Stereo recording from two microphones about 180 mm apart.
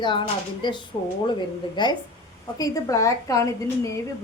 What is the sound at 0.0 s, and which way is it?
A woman's voice, 25° left (ahead or behind).